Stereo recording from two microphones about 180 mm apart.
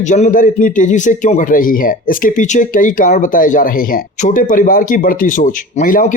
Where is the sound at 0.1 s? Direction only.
45° left (ahead or behind).